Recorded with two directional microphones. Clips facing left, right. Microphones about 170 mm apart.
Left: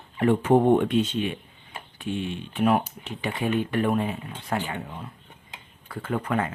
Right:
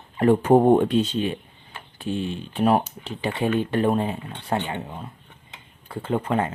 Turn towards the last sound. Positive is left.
turn(degrees=-25)  # may be behind; listen again after turning